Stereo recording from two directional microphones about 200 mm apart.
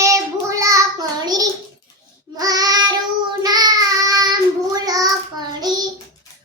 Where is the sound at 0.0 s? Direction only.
15° right (ahead or behind).